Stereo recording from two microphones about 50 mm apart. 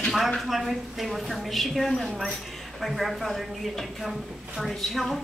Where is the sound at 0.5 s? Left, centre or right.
Centre.